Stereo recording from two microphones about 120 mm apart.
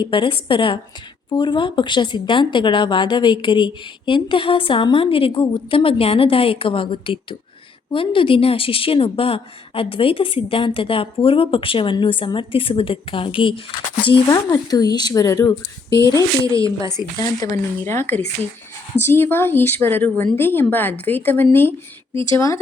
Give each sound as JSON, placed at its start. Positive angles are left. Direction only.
{"t": 0.0, "sound": "speech", "side_deg": 45}
{"t": 14.3, "sound": "speech", "side_deg": 30}
{"t": 16.5, "sound": "speech", "side_deg": -30}
{"t": 16.8, "sound": "speech", "side_deg": 30}